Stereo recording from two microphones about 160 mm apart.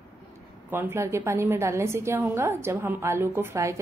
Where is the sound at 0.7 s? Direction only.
15° right (ahead or behind).